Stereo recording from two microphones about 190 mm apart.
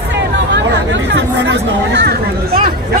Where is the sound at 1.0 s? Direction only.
60° right (ahead or behind).